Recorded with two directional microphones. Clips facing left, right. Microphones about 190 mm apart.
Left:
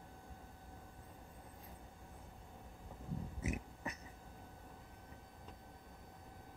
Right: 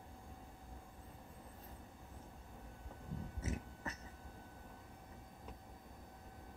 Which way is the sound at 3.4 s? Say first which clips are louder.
Left 1 dB; 15° left (ahead or behind).